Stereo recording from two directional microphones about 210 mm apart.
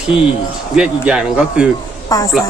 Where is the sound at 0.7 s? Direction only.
5° right (ahead or behind).